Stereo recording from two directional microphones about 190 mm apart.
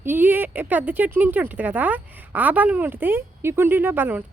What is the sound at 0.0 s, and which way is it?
Speech, 10° right (ahead or behind).